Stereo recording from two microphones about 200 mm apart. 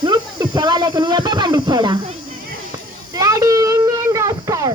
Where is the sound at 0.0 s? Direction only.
20° right (ahead or behind).